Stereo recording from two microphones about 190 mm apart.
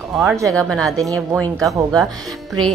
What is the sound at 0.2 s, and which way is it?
Speech, 15° right (ahead or behind).